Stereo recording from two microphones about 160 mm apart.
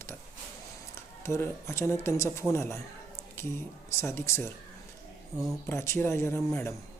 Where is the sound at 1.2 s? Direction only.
15° left (ahead or behind).